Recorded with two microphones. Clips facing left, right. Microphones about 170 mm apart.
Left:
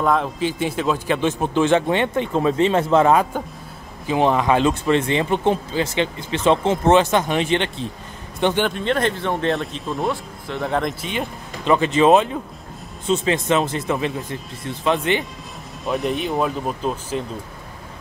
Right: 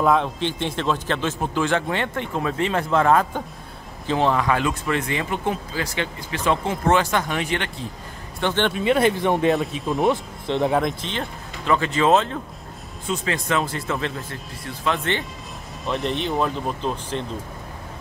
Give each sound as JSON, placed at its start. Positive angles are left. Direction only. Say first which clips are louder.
{"t": 0.0, "sound": "a man's voice", "louder": "even", "side_deg": 0}
{"t": 8.6, "sound": "speech", "louder": "right 2 dB", "side_deg": -5}
{"t": 9.5, "sound": "speech", "louder": "right 2 dB", "side_deg": -5}
{"t": 10.0, "sound": "speech", "louder": "right 4 dB", "side_deg": -20}
{"t": 10.7, "sound": "speech", "louder": "right 1 dB", "side_deg": 0}
{"t": 11.1, "sound": "a man's voice", "louder": "left 3 dB", "side_deg": 15}
{"t": 15.8, "sound": "speech", "louder": "left 2 dB", "side_deg": 0}